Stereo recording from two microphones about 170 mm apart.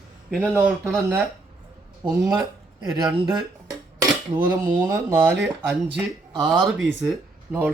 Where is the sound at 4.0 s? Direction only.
10° right (ahead or behind).